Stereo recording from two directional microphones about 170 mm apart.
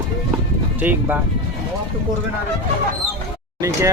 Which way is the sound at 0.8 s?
10° right (ahead or behind).